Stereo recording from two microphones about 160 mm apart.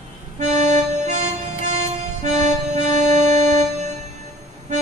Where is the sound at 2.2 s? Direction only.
45° right (ahead or behind).